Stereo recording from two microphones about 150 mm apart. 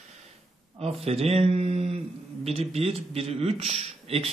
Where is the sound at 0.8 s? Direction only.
40° right (ahead or behind).